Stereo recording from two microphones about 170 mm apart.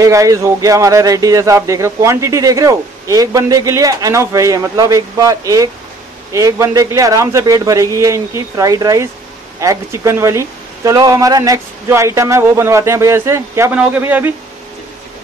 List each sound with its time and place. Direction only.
0.0 s speech: 20° right (ahead or behind)